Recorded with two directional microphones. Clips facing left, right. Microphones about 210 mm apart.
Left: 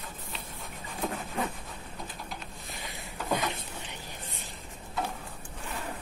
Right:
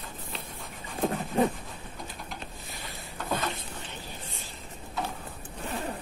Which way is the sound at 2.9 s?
15° left (ahead or behind).